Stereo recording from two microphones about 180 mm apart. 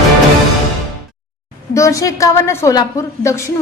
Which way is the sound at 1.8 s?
15° left (ahead or behind).